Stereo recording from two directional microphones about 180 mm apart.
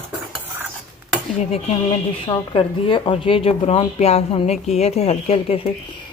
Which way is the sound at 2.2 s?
30° left (ahead or behind).